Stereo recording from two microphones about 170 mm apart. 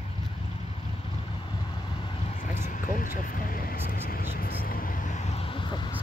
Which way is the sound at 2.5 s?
50° left (ahead or behind).